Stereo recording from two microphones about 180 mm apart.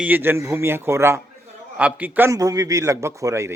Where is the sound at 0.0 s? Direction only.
10° right (ahead or behind).